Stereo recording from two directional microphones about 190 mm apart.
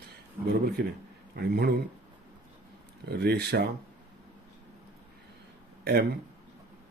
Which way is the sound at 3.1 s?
60° right (ahead or behind).